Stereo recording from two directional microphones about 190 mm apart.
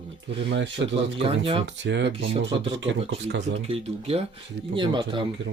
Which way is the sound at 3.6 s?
30° right (ahead or behind).